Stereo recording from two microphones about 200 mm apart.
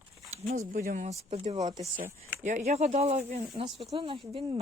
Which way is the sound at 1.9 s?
40° right (ahead or behind).